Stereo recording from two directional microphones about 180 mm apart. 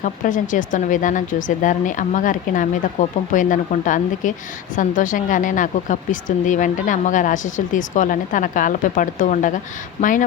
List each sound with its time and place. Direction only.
0.0 s speech: 45° left (ahead or behind)